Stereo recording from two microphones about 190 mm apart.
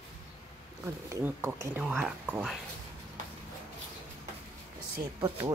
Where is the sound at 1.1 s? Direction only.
15° right (ahead or behind).